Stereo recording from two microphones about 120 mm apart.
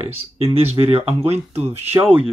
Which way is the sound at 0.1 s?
55° right (ahead or behind).